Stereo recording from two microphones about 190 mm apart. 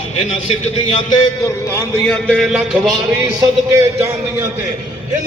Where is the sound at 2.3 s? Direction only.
5° right (ahead or behind).